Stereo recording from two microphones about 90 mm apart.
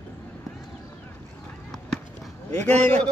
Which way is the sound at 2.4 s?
20° left (ahead or behind).